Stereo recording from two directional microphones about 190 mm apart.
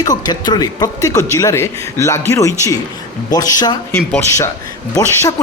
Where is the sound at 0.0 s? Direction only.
20° left (ahead or behind).